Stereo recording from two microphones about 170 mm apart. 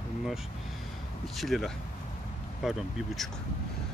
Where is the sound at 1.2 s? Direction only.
Centre (ahead or behind).